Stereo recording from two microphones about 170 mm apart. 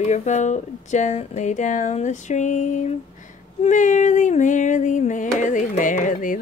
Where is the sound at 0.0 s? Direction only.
45° left (ahead or behind).